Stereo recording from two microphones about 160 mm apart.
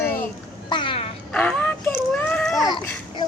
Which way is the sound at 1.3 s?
10° left (ahead or behind).